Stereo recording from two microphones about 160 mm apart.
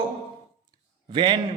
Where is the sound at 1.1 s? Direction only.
30° right (ahead or behind).